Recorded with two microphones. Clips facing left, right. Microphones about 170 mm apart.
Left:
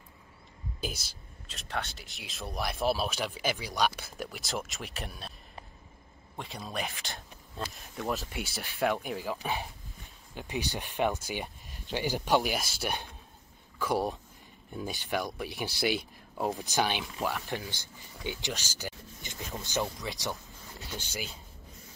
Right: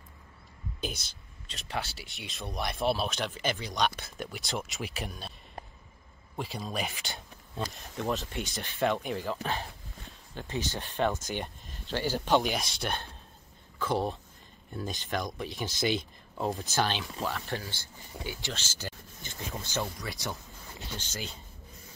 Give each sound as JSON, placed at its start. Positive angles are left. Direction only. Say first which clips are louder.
{"t": 1.0, "sound": "speech", "louder": "left 1 dB", "side_deg": 0}
{"t": 6.3, "sound": "speech", "louder": "right 3 dB", "side_deg": 0}
{"t": 12.4, "sound": "speech", "louder": "right 1 dB", "side_deg": 5}